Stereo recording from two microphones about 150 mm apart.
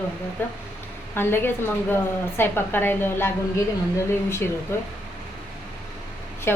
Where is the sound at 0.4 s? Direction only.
15° left (ahead or behind).